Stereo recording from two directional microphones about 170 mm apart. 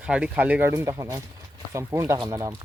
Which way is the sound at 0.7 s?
20° right (ahead or behind).